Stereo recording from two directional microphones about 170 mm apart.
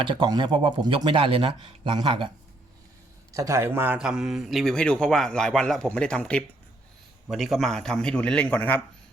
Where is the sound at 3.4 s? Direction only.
15° right (ahead or behind).